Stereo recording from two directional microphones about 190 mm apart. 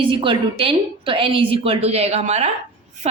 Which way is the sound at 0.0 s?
25° right (ahead or behind).